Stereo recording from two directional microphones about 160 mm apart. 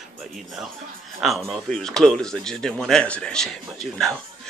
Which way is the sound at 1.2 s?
Centre (ahead or behind).